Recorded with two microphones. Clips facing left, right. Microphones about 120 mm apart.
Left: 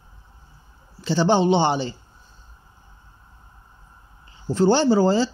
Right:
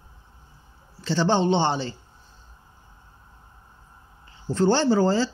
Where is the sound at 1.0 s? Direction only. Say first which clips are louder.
Left 3 dB; 10° left (ahead or behind).